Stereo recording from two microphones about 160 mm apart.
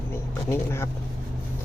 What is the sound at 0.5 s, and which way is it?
Speech, 15° left (ahead or behind).